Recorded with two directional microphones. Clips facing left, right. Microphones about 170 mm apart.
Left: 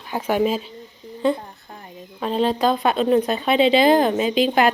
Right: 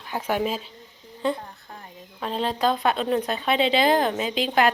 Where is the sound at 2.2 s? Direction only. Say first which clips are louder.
Left 5 dB; 5° left (ahead or behind).